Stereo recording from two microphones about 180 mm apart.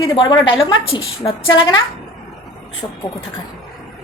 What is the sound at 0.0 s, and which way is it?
A woman's voice, 25° left (ahead or behind).